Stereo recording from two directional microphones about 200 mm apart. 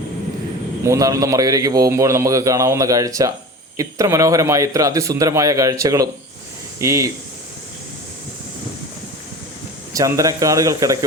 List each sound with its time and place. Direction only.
0.9 s a man's voice: 15° right (ahead or behind)
9.9 s a man's voice: 15° right (ahead or behind)